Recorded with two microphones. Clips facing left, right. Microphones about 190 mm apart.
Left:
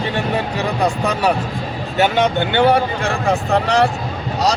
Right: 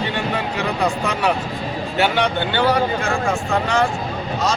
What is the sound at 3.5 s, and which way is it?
Speech, 35° left (ahead or behind).